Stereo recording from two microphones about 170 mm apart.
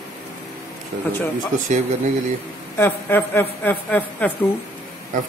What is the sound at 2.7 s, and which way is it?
A woman's voice, 10° left (ahead or behind).